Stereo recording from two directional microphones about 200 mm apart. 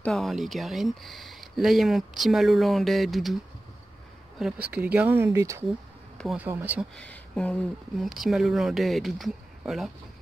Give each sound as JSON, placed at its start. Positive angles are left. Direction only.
{"t": 0.0, "sound": "speech", "side_deg": 0}
{"t": 4.4, "sound": "speech", "side_deg": -5}
{"t": 7.0, "sound": "speech", "side_deg": 5}